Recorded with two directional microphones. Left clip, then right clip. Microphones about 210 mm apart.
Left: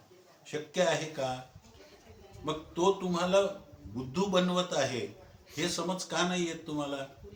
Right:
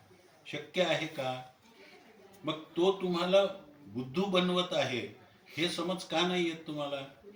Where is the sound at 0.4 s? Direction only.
20° left (ahead or behind).